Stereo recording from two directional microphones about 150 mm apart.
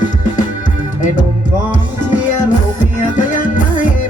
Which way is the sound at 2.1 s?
55° left (ahead or behind).